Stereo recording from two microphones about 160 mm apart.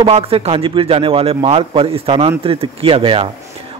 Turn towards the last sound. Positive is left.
turn(degrees=-35)  # may be behind; listen again after turning